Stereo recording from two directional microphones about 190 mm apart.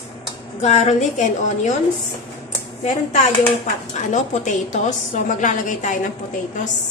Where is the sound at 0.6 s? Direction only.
35° left (ahead or behind).